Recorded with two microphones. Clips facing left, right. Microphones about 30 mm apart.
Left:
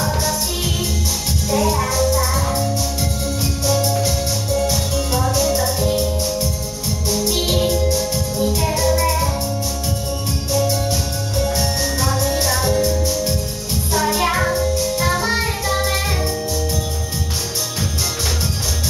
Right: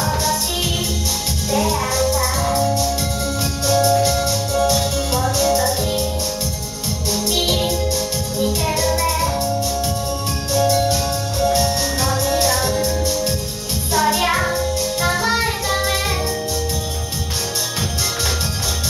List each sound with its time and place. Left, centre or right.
0.0 s music: centre
1.5 s music: centre
2.1 s music: centre
3.8 s music: right
7.2 s music: centre
8.8 s music: centre
10.5 s music: centre